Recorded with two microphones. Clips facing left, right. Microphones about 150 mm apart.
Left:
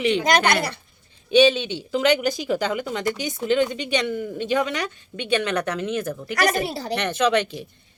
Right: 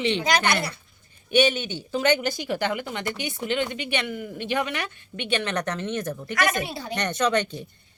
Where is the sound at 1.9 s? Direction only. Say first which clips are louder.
Left 3 dB; 15° left (ahead or behind).